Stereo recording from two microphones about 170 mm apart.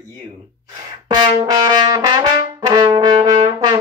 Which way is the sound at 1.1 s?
25° right (ahead or behind).